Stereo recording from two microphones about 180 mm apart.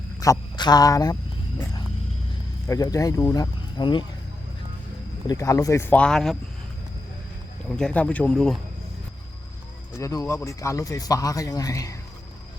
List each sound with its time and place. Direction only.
0.2 s speech: 20° left (ahead or behind)
2.6 s speech: 20° left (ahead or behind)
5.3 s speech: 20° left (ahead or behind); by 6.3 s 5° left (ahead or behind)
7.8 s speech: 5° left (ahead or behind)
10.0 s a man's voice: 20° left (ahead or behind)